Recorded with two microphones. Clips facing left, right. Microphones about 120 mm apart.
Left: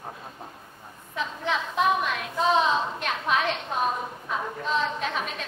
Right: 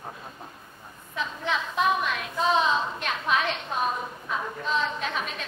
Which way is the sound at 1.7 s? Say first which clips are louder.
Left 1 dB; 10° left (ahead or behind).